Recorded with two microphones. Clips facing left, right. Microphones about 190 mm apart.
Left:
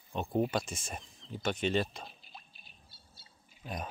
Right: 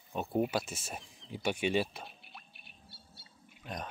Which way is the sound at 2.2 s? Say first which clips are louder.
Even; 65° right (ahead or behind).